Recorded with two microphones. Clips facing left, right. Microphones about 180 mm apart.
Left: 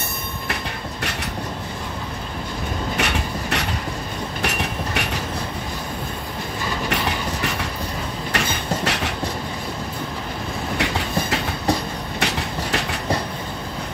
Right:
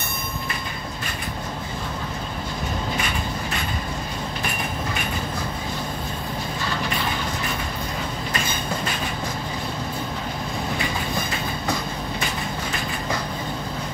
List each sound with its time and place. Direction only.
3.0 s train: 75° left (ahead or behind)
6.9 s a sound: 75° left (ahead or behind)
8.3 s beatboxing: 75° left (ahead or behind)
10.8 s train: 75° left (ahead or behind)